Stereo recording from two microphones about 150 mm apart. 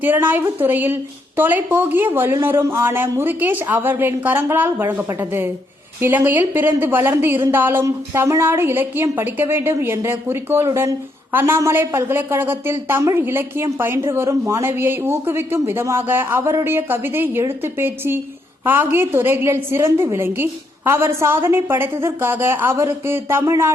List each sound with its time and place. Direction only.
0.0 s a woman's voice: 15° right (ahead or behind)